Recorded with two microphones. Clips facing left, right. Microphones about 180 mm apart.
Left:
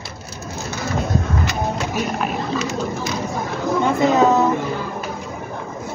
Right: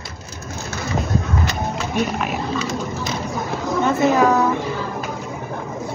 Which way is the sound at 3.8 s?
20° left (ahead or behind).